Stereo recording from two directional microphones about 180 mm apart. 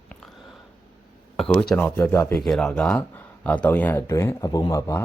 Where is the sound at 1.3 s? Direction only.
5° left (ahead or behind).